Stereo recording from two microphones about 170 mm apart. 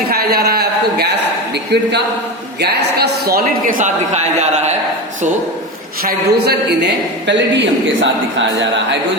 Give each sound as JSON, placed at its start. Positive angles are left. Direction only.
{"t": 0.1, "sound": "a sound", "side_deg": -65}
{"t": 1.7, "sound": "a man's voice", "side_deg": -85}
{"t": 2.6, "sound": "a man's voice", "side_deg": -70}
{"t": 6.0, "sound": "a man's voice", "side_deg": -65}